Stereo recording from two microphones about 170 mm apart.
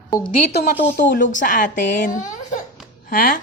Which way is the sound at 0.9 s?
50° left (ahead or behind).